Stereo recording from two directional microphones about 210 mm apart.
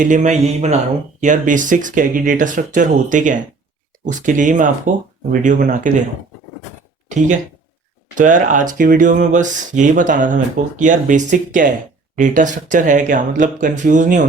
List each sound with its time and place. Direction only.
0.0 s speech: 35° right (ahead or behind)
8.1 s speech: 40° right (ahead or behind)